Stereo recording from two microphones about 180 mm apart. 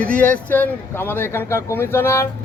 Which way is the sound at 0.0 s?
10° left (ahead or behind).